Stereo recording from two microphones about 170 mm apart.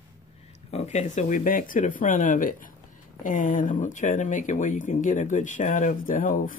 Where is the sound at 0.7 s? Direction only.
40° left (ahead or behind).